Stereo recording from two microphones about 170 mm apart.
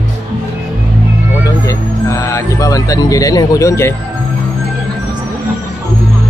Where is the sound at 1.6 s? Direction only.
20° left (ahead or behind).